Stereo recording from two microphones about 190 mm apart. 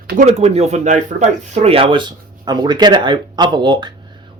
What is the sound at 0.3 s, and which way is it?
Speech, 35° right (ahead or behind).